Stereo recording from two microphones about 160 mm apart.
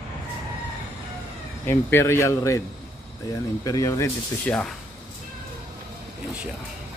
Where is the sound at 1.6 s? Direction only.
15° left (ahead or behind).